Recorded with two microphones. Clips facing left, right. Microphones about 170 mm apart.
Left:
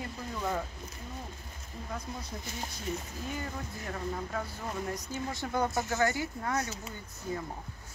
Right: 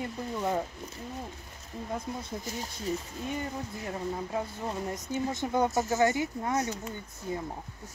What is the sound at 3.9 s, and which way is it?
Speech, 20° right (ahead or behind).